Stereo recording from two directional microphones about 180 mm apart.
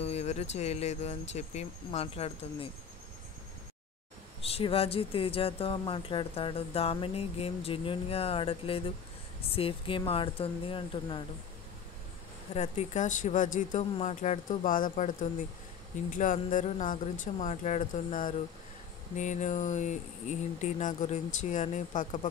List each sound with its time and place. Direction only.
0.0 s a sound: 35° left (ahead or behind)
0.6 s speech: 35° left (ahead or behind)
4.4 s speech: 35° left (ahead or behind)
12.5 s speech: 40° left (ahead or behind)